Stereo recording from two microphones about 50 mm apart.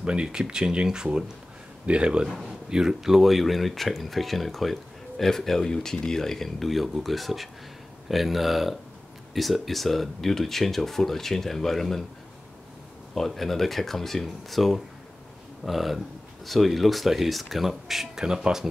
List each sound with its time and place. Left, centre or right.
0.0 s speech: centre
13.1 s speech: centre